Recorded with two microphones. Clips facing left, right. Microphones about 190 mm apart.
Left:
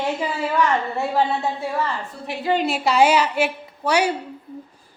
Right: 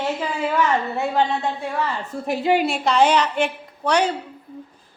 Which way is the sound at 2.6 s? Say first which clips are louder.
Even; 5° left (ahead or behind).